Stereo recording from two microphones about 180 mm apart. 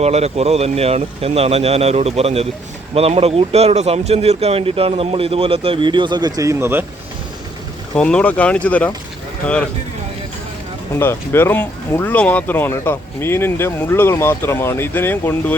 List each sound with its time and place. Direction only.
0.0 s speech: 35° right (ahead or behind); by 6.8 s 15° right (ahead or behind)
7.9 s speech: 5° left (ahead or behind)
11.0 s speech: 15° left (ahead or behind)